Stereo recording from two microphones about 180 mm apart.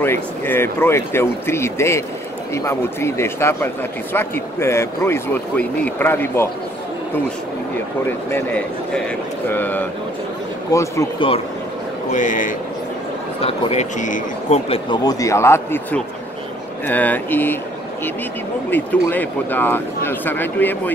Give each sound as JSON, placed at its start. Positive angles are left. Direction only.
{"t": 0.0, "sound": "speech", "side_deg": 10}
{"t": 8.3, "sound": "speech", "side_deg": 10}
{"t": 11.1, "sound": "speech", "side_deg": 30}
{"t": 12.1, "sound": "speech", "side_deg": 45}
{"t": 13.4, "sound": "speech", "side_deg": 35}
{"t": 14.7, "sound": "speech", "side_deg": 25}
{"t": 18.7, "sound": "speech", "side_deg": 10}